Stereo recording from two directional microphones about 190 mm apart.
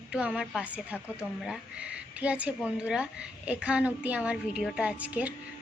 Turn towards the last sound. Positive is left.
turn(degrees=-10)  # may be behind; listen again after turning